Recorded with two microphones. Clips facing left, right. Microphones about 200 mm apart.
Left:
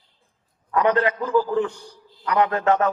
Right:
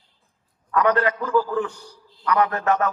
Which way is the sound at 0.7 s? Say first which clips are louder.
Even; 20° left (ahead or behind).